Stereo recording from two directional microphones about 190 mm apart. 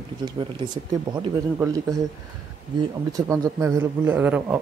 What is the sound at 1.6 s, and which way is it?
Speech, 20° right (ahead or behind).